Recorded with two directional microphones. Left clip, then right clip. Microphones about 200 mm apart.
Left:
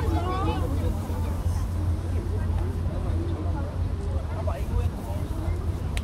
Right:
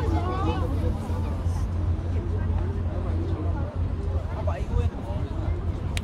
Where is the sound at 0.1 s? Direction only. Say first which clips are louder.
Left 2 dB; 45° left (ahead or behind).